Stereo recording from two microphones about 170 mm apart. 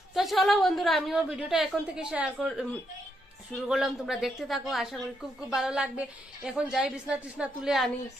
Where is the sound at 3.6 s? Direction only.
5° right (ahead or behind).